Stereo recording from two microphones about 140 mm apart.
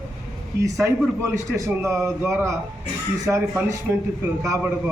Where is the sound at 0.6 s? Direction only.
20° right (ahead or behind).